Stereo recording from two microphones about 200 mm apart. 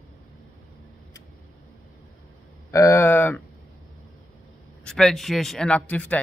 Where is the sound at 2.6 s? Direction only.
15° left (ahead or behind).